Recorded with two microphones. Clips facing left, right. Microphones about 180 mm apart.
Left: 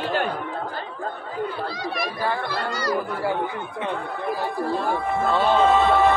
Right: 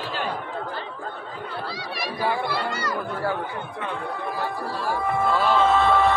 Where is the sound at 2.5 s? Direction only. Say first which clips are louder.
Left 1 dB; 40° left (ahead or behind).